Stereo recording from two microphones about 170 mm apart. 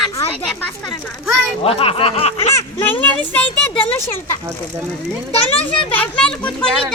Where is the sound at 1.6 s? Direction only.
35° left (ahead or behind).